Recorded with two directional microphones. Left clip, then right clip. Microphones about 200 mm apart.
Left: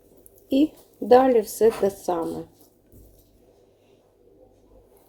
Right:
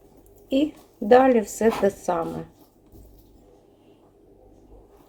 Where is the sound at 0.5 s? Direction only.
40° left (ahead or behind).